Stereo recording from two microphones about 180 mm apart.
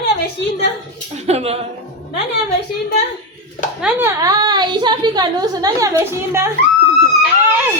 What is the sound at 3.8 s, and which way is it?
A woman's voice, 15° right (ahead or behind).